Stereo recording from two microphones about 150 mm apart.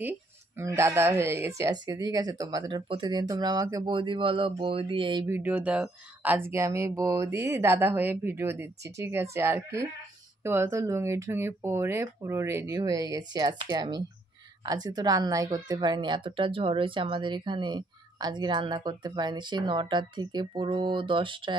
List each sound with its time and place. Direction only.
0.6 s speech: 20° right (ahead or behind); by 5.2 s 35° right (ahead or behind)
5.2 s speech: 15° right (ahead or behind); by 21.5 s 35° right (ahead or behind)